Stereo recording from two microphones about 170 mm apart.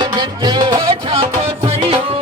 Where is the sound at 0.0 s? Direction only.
25° right (ahead or behind).